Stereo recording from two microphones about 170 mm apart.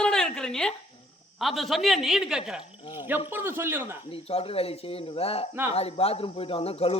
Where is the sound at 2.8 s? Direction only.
30° left (ahead or behind).